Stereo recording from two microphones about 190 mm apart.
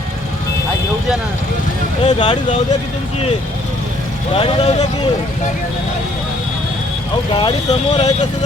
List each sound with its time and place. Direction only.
2.0 s speech: 25° left (ahead or behind)
4.4 s speech: 30° left (ahead or behind)
7.3 s speech: 30° left (ahead or behind)